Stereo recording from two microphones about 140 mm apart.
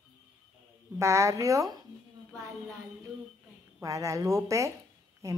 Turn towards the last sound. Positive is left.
turn(degrees=-20)  # may be behind; listen again after turning